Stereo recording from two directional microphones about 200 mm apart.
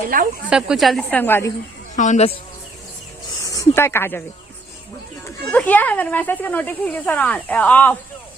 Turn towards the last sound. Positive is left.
turn(degrees=5)  # may be behind; listen again after turning